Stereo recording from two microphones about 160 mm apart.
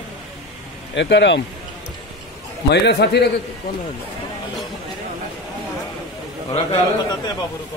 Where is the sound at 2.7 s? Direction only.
90° left.